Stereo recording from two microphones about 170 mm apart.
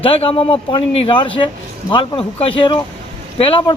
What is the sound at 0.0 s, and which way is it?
Speech, 35° left (ahead or behind).